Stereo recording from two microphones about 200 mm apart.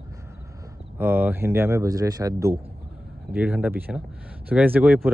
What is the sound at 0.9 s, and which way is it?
Speech, 10° right (ahead or behind).